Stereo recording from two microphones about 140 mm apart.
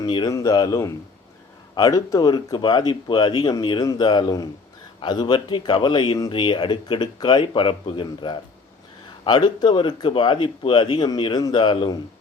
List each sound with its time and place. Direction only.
0.0 s speech: 35° left (ahead or behind)
0.3 s speech: 25° left (ahead or behind)